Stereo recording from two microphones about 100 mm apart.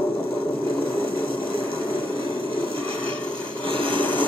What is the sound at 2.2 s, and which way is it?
Filing, 65° right (ahead or behind).